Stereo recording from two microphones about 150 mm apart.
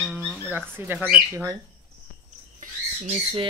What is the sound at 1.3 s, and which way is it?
Speech, 20° right (ahead or behind).